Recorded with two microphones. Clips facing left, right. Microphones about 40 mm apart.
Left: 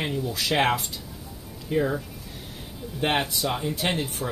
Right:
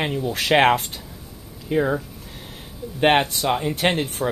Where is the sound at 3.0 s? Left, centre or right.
Right.